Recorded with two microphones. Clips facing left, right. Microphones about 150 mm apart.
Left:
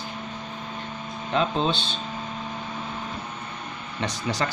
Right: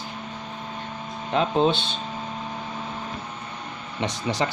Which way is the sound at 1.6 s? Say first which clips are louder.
Right 4 dB; 60° right (ahead or behind).